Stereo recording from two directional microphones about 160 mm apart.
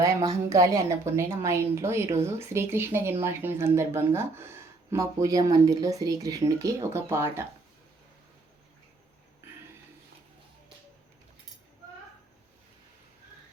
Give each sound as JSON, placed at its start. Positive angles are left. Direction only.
{"t": 0.3, "sound": "a woman's voice", "side_deg": -20}